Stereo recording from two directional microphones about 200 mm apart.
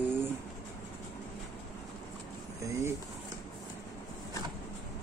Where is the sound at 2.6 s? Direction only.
15° right (ahead or behind).